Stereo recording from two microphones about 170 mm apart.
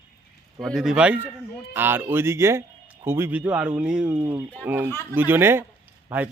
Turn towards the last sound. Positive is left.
turn(degrees=-10)  # may be behind; listen again after turning